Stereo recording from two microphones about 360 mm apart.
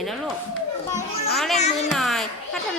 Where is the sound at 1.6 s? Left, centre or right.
Centre.